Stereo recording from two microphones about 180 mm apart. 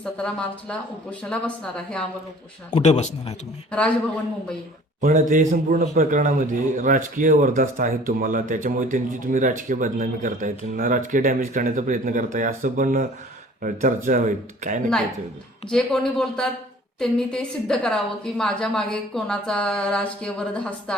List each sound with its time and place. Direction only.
0.0 s a woman's voice: 5° left (ahead or behind)
2.6 s speech: 35° left (ahead or behind)
3.7 s a man's voice: 5° left (ahead or behind)
4.9 s a man's voice: 45° right (ahead or behind)
15.7 s a woman's voice: 5° left (ahead or behind)